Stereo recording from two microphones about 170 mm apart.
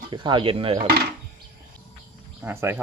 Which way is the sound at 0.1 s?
25° right (ahead or behind).